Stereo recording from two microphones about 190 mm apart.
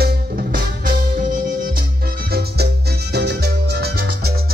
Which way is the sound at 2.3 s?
55° right (ahead or behind).